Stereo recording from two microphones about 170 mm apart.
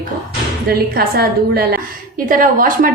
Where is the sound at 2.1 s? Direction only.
55° right (ahead or behind).